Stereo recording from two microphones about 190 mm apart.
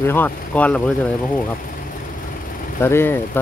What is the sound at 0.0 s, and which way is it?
Speech, 10° left (ahead or behind).